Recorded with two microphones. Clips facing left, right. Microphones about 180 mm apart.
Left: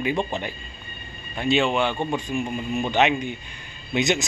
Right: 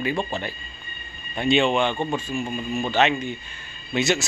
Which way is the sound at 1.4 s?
5° left (ahead or behind).